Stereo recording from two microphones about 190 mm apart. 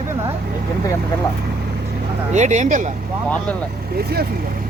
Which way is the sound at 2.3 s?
40° right (ahead or behind).